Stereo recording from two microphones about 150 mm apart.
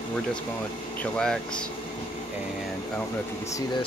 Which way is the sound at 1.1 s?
5° left (ahead or behind).